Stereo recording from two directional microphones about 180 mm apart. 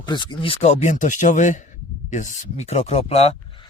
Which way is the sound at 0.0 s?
25° left (ahead or behind).